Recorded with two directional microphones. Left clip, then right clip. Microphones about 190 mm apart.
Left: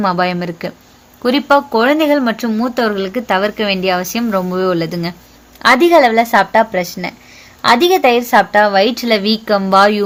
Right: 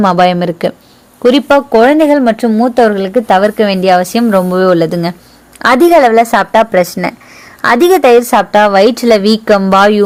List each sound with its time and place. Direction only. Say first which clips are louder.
0.0 s a woman's voice: right 7 dB; 40° right (ahead or behind)
6.0 s a woman's voice: right 4 dB; 30° right (ahead or behind)
6.3 s a woman's voice: right 4 dB; 45° right (ahead or behind)